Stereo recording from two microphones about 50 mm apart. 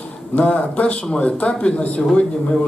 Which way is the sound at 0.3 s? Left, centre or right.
Left.